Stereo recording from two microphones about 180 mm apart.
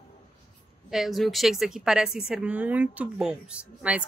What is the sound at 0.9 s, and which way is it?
A woman's voice, centre (ahead or behind).